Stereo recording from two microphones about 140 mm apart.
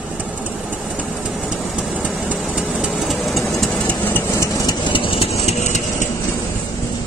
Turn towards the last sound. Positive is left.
turn(degrees=55)  # may be behind; listen again after turning